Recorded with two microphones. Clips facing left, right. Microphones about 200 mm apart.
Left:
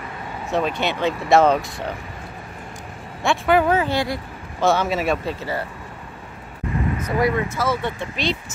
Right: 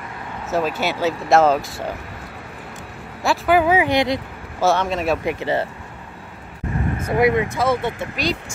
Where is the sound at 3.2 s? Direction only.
5° right (ahead or behind).